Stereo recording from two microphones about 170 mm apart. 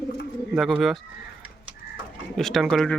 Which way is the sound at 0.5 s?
Centre (ahead or behind).